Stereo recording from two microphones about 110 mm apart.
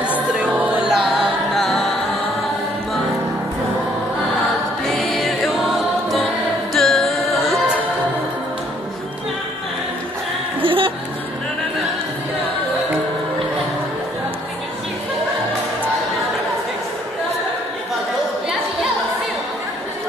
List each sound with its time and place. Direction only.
0.0 s music: 10° right (ahead or behind)
4.8 s music: centre (ahead or behind)
10.6 s music: 55° right (ahead or behind)